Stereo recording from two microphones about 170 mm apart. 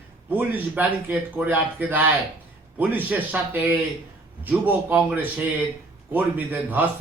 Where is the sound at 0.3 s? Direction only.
10° right (ahead or behind).